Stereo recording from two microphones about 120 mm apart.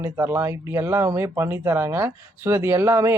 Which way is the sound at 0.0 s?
20° right (ahead or behind).